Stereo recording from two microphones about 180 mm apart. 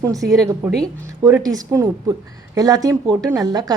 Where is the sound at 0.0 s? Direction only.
20° right (ahead or behind).